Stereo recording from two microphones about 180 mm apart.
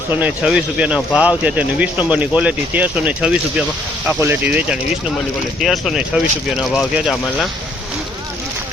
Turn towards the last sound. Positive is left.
turn(degrees=0)  # may be behind; listen again after turning